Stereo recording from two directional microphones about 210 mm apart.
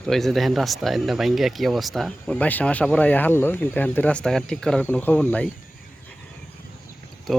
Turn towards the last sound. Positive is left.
turn(degrees=0)  # may be behind; listen again after turning